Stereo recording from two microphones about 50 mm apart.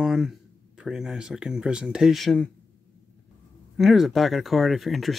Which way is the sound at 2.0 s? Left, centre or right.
Centre.